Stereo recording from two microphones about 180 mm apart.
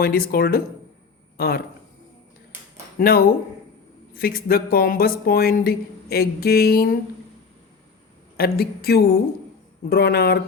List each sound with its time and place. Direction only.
0.0 s speech: 55° left (ahead or behind)
3.0 s speech: 55° left (ahead or behind)
8.4 s speech: 60° left (ahead or behind)